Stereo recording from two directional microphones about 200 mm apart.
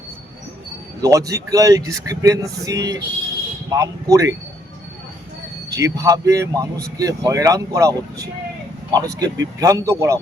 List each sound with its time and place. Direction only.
1.0 s speech: 15° right (ahead or behind)
5.7 s speech: 15° right (ahead or behind)